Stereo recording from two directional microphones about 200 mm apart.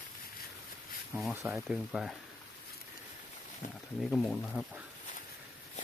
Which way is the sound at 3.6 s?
45° left (ahead or behind).